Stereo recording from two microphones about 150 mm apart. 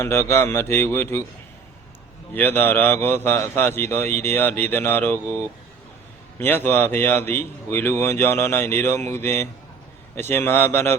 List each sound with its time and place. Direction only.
0.0 s a man's voice: 15° left (ahead or behind)
2.3 s a man's voice: 15° left (ahead or behind)
6.4 s a man's voice: 15° left (ahead or behind)